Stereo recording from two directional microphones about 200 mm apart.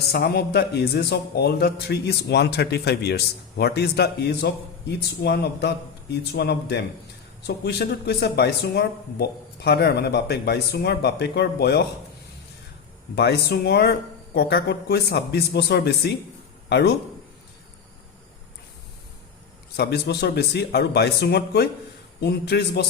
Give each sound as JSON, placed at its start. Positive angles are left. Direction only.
{"t": 0.1, "sound": "a man's voice", "side_deg": 55}
{"t": 13.1, "sound": "a man's voice", "side_deg": 55}
{"t": 19.7, "sound": "a man's voice", "side_deg": 55}